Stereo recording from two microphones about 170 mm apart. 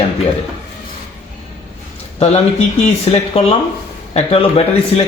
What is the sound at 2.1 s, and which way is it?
A man's voice, 35° left (ahead or behind).